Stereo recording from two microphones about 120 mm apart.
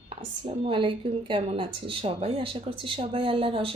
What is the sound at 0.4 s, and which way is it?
Speech, 45° right (ahead or behind).